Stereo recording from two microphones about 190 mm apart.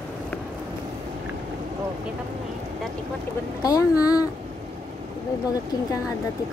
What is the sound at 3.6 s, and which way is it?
Speech, 20° left (ahead or behind).